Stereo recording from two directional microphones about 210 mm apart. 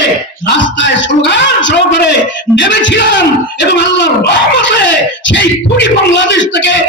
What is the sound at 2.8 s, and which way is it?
Speech, 60° left (ahead or behind).